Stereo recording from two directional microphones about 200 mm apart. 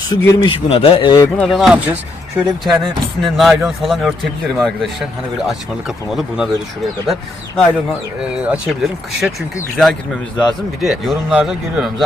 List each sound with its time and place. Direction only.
0.1 s speech: 15° left (ahead or behind)
0.4 s speech: 30° left (ahead or behind)
1.4 s speech: centre (ahead or behind)
6.1 s speech: centre (ahead or behind)